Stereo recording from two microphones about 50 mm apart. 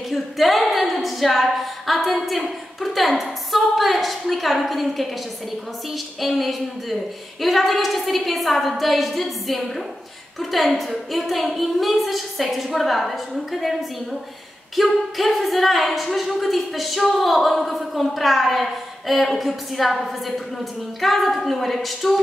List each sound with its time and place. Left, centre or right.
0.1 s speech: centre